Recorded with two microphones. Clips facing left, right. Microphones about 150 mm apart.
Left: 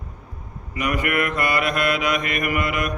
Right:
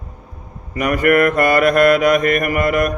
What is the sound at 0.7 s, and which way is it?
Mantra, 45° right (ahead or behind).